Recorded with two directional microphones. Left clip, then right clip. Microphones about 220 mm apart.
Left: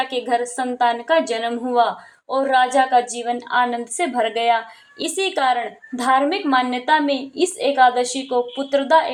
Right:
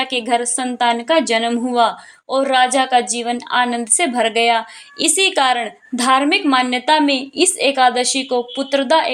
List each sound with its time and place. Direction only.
0.0 s a woman's voice: 25° right (ahead or behind)